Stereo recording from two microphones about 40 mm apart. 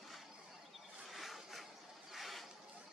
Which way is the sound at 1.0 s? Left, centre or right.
Centre.